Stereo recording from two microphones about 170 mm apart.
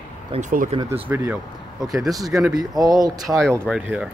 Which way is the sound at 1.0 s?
10° right (ahead or behind).